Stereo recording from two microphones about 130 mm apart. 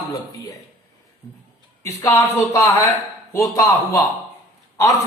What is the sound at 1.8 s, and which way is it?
A man's voice, 25° left (ahead or behind).